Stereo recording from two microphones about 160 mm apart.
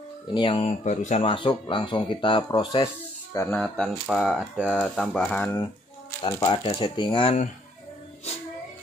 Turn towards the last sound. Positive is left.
turn(degrees=30)  # may be behind; listen again after turning